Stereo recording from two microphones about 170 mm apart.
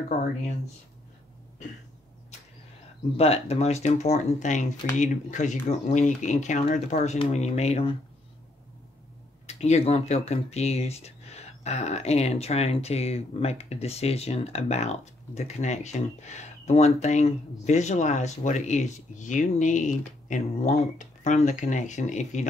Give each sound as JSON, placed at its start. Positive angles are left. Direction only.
{"t": 3.2, "sound": "speech", "side_deg": 35}
{"t": 9.5, "sound": "speech", "side_deg": 40}